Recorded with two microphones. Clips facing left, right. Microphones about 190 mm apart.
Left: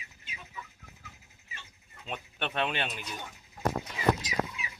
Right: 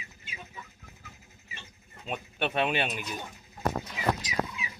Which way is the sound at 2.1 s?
10° right (ahead or behind).